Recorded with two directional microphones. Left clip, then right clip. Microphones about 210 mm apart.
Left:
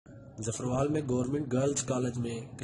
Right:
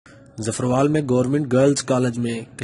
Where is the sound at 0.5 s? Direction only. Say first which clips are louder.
Right 11 dB; 40° right (ahead or behind).